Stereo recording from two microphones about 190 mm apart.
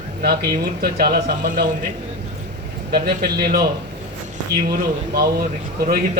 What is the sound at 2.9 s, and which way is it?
A man's voice, 55° right (ahead or behind).